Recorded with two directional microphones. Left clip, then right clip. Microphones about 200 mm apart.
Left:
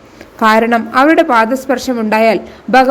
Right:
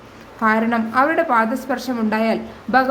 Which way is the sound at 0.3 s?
35° left (ahead or behind).